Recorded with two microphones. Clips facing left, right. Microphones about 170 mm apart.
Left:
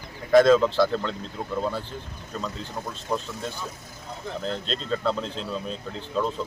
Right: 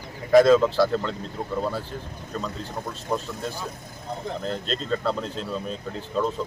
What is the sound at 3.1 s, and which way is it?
Speech, centre (ahead or behind).